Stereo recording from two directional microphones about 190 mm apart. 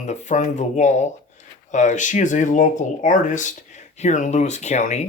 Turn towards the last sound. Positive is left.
turn(degrees=40)  # may be behind; listen again after turning